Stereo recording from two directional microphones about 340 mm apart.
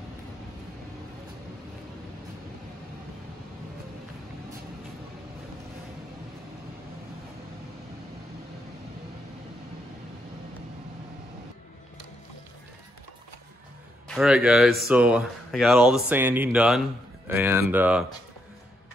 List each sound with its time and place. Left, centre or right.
14.0 s speech: centre